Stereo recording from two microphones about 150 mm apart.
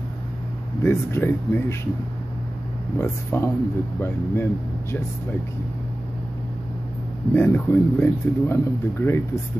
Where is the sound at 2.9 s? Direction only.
15° left (ahead or behind).